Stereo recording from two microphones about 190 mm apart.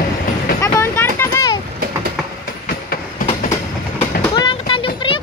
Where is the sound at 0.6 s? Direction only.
15° left (ahead or behind).